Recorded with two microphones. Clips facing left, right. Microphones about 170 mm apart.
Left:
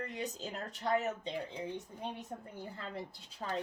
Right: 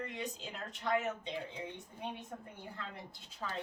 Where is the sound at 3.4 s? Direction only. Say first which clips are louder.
Left 3 dB; 35° left (ahead or behind).